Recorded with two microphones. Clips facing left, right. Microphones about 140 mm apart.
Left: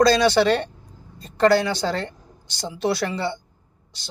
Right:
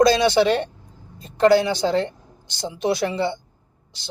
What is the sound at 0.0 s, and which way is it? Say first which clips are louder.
A woman's voice: right 1 dB; 20° right (ahead or behind).